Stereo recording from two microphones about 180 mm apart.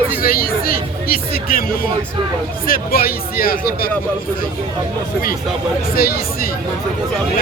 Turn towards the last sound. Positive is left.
turn(degrees=55)  # may be behind; listen again after turning